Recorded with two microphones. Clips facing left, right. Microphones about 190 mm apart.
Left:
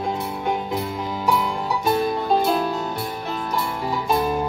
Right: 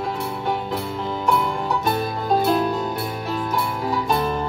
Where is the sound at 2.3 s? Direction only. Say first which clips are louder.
Right 4 dB; centre (ahead or behind).